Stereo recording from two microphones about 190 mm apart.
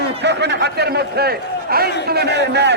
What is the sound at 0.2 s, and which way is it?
A man's voice, 65° right (ahead or behind).